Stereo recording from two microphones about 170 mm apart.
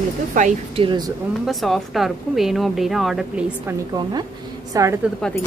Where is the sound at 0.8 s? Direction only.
30° right (ahead or behind).